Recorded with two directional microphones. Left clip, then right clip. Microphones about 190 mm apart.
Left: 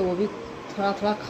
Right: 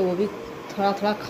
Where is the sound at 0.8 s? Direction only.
Centre (ahead or behind).